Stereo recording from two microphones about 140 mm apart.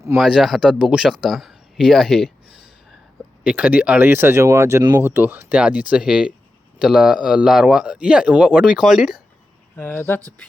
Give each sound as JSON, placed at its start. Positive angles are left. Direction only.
{"t": 0.2, "sound": "speech", "side_deg": -5}
{"t": 9.7, "sound": "speech", "side_deg": 15}